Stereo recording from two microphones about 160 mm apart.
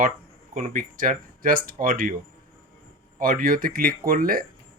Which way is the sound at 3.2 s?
60° right (ahead or behind).